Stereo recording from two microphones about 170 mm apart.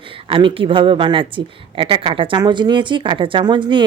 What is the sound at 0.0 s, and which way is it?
A woman's voice, 30° right (ahead or behind).